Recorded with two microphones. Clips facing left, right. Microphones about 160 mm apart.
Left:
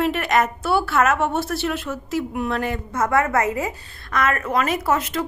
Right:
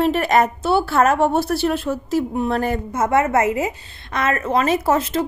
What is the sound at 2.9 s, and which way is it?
A woman's voice, 25° right (ahead or behind).